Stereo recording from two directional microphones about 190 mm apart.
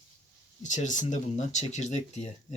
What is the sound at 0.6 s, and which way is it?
Speech, 40° left (ahead or behind).